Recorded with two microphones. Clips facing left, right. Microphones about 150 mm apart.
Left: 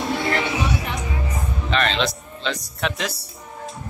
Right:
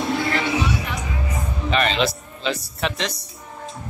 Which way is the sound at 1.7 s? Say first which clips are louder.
Right 2 dB; 5° right (ahead or behind).